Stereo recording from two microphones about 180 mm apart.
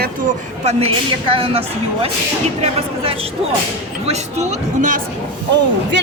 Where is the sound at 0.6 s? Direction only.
35° right (ahead or behind).